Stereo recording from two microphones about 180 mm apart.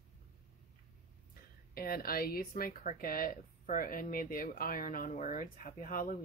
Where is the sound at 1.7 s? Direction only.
55° left (ahead or behind).